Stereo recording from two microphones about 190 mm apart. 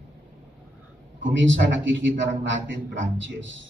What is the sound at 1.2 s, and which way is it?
A man's voice, 75° right (ahead or behind).